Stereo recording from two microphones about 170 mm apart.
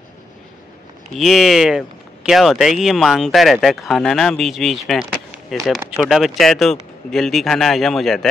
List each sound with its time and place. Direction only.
1.1 s speech: centre (ahead or behind)